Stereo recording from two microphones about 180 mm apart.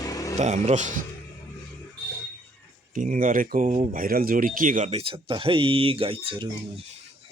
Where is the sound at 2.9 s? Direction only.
45° right (ahead or behind).